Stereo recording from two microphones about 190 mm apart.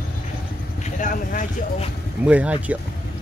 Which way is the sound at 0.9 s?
40° left (ahead or behind).